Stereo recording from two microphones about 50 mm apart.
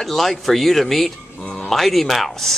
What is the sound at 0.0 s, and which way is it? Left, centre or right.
Speech, centre.